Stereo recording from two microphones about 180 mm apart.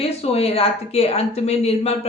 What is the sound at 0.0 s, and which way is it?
A woman's voice, 35° left (ahead or behind).